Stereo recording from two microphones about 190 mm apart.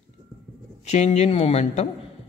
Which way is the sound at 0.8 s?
35° left (ahead or behind).